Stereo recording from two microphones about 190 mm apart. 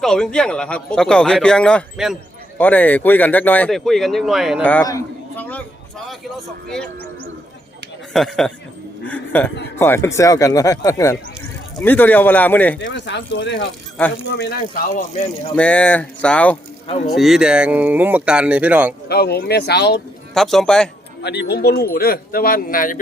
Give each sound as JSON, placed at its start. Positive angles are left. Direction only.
{"t": 0.0, "sound": "speech", "side_deg": 5}
{"t": 4.9, "sound": "a sound", "side_deg": 15}
{"t": 6.7, "sound": "speech", "side_deg": 5}
{"t": 8.1, "sound": "speech", "side_deg": 0}
{"t": 12.9, "sound": "speech", "side_deg": 70}
{"t": 15.5, "sound": "speech", "side_deg": 5}
{"t": 19.0, "sound": "speech", "side_deg": 55}
{"t": 20.3, "sound": "speech", "side_deg": 0}
{"t": 21.2, "sound": "speech", "side_deg": 60}